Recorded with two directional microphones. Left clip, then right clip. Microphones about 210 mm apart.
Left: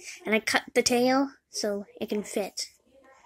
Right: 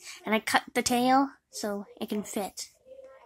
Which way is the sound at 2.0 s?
60° right (ahead or behind).